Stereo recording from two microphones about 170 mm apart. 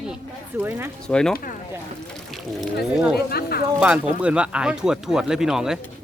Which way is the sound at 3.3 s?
65° left (ahead or behind).